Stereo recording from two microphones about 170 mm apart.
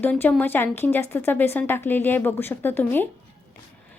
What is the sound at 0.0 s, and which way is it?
Speech, 10° left (ahead or behind).